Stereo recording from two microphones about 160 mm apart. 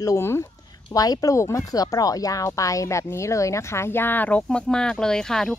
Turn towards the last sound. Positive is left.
turn(degrees=5)  # may be behind; listen again after turning